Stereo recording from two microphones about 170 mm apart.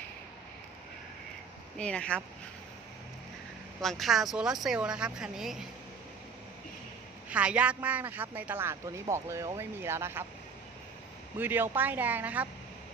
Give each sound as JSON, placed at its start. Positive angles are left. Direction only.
{"t": 1.8, "sound": "speech", "side_deg": 5}
{"t": 3.8, "sound": "speech", "side_deg": 0}
{"t": 7.3, "sound": "speech", "side_deg": -10}
{"t": 11.3, "sound": "speech", "side_deg": -10}